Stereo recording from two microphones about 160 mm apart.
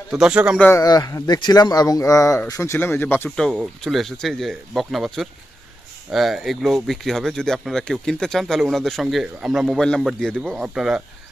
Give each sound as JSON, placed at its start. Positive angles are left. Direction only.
{"t": 0.1, "sound": "speech", "side_deg": -5}
{"t": 0.6, "sound": "speech", "side_deg": 15}